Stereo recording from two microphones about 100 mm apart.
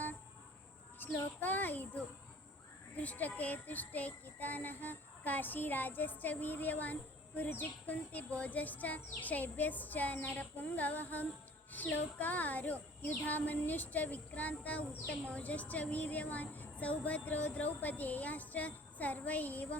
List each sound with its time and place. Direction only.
0.9 s a child's voice: 20° left (ahead or behind)